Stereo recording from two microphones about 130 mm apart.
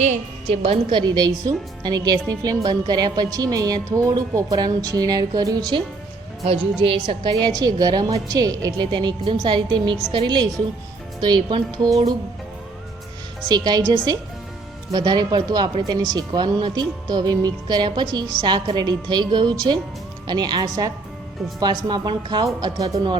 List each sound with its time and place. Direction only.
0.0 s a woman's voice: 60° right (ahead or behind); by 5.6 s 30° right (ahead or behind)
6.8 s speech: 40° right (ahead or behind)
13.5 s a woman's voice: 30° right (ahead or behind)